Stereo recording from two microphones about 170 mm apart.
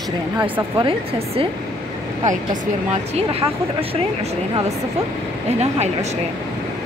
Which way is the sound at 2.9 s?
35° right (ahead or behind).